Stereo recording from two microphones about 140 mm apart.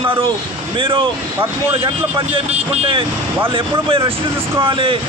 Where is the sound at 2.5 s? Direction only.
45° right (ahead or behind).